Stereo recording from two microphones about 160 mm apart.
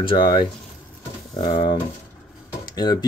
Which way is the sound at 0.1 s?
30° left (ahead or behind).